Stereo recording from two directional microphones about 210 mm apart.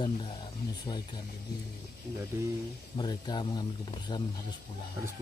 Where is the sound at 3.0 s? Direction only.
20° left (ahead or behind).